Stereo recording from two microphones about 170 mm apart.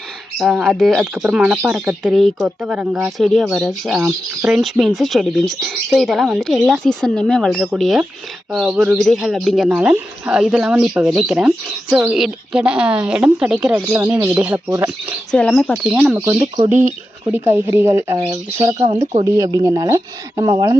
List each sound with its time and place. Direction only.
0.3 s speech: centre (ahead or behind)
15.3 s speech: 5° left (ahead or behind)
15.8 s speech: 5° right (ahead or behind); by 20.7 s 20° right (ahead or behind)